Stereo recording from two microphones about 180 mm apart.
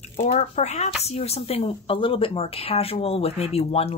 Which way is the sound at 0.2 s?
40° left (ahead or behind).